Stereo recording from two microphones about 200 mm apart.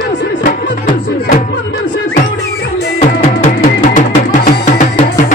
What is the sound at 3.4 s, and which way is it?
Music, 40° left (ahead or behind).